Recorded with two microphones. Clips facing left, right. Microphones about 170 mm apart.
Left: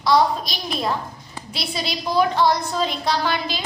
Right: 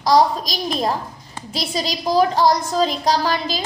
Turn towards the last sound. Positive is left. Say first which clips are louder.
# right 3 dB
turn(degrees=-40)  # may be behind; listen again after turning